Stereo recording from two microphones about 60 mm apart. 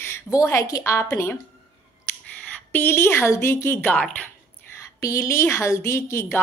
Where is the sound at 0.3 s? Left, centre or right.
Left.